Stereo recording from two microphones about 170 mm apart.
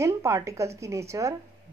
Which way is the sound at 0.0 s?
15° right (ahead or behind).